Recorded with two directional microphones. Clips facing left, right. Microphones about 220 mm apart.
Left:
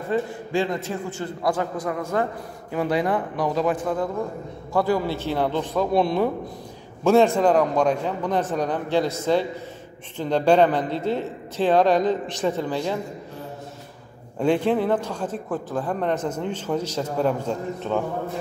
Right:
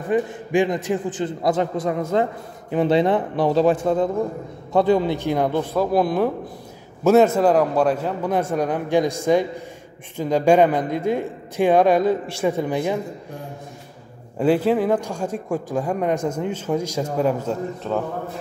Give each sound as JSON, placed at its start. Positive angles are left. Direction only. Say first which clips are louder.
{"t": 0.1, "sound": "a man's voice", "louder": "right 4 dB", "side_deg": -15}
{"t": 14.4, "sound": "a man's voice", "louder": "right 2 dB", "side_deg": -5}